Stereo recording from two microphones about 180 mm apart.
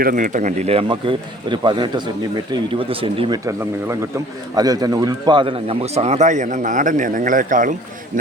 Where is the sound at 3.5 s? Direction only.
15° right (ahead or behind).